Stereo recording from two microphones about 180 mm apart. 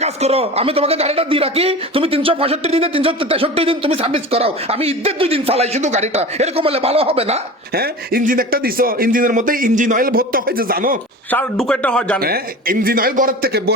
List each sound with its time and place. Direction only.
0.0 s a man's voice: 35° right (ahead or behind)
7.7 s speech: 60° right (ahead or behind)
11.3 s a man's voice: 5° left (ahead or behind)
12.2 s a man's voice: 55° right (ahead or behind)